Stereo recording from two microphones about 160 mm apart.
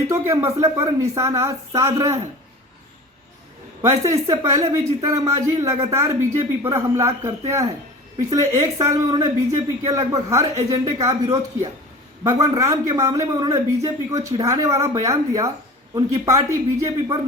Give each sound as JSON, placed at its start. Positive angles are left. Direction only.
{"t": 0.1, "sound": "speech", "side_deg": -15}
{"t": 3.8, "sound": "speech", "side_deg": -20}